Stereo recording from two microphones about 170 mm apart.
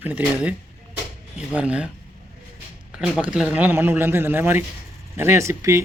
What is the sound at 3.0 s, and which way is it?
Speech, 5° right (ahead or behind).